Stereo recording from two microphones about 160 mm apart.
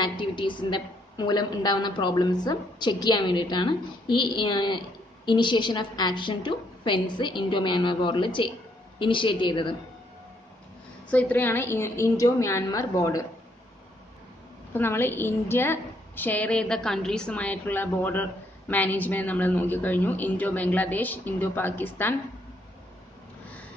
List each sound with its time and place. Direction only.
0.0 s a woman's voice: 30° left (ahead or behind)
11.1 s a woman's voice: 10° left (ahead or behind)
14.7 s a woman's voice: 15° left (ahead or behind)